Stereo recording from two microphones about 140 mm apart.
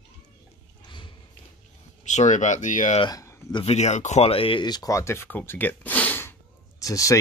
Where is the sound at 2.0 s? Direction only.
60° left (ahead or behind).